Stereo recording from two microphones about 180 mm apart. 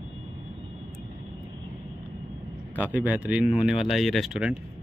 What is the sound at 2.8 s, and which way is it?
Speech, 10° right (ahead or behind).